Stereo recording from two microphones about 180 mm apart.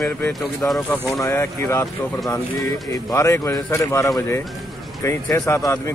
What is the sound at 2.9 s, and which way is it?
Speech, 15° left (ahead or behind).